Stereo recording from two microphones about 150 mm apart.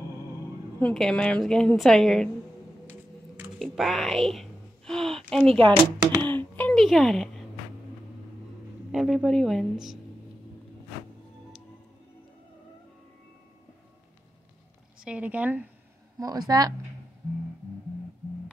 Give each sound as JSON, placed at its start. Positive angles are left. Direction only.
{"t": 0.7, "sound": "a woman's voice", "side_deg": 5}
{"t": 2.9, "sound": "a sound", "side_deg": -10}
{"t": 3.5, "sound": "speech", "side_deg": 0}
{"t": 5.6, "sound": "speech", "side_deg": -35}
{"t": 6.2, "sound": "speech", "side_deg": 10}
{"t": 6.8, "sound": "a woman's voice", "side_deg": 0}
{"t": 8.9, "sound": "a woman's voice", "side_deg": 0}
{"t": 15.0, "sound": "speech", "side_deg": -5}
{"t": 16.2, "sound": "a woman's voice", "side_deg": -25}